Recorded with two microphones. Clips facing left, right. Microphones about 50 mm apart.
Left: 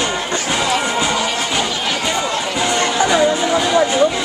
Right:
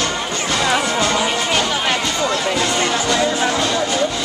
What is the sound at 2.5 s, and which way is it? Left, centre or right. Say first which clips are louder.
Music: left 2 dB; centre.